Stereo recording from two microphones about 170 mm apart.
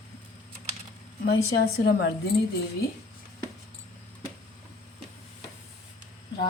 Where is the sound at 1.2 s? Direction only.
65° left (ahead or behind).